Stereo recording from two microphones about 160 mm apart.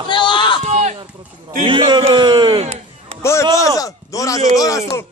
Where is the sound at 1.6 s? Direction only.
30° right (ahead or behind).